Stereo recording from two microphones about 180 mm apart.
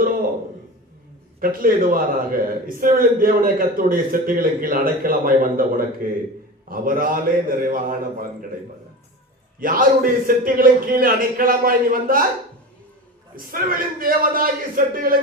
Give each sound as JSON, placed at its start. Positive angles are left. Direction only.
{"t": 1.4, "sound": "a man's voice", "side_deg": -50}
{"t": 9.6, "sound": "a man's voice", "side_deg": -50}
{"t": 13.3, "sound": "a man's voice", "side_deg": -50}